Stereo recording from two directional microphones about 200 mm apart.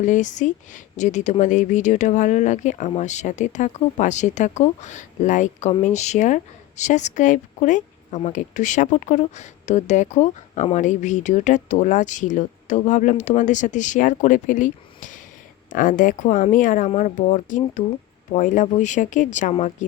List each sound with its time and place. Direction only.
0.0 s a woman's voice: 40° left (ahead or behind)